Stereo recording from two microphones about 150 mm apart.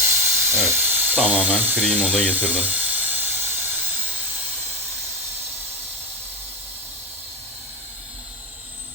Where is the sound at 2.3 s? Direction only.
10° right (ahead or behind).